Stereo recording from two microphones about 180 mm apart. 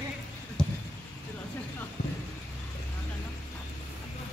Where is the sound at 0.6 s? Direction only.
5° left (ahead or behind).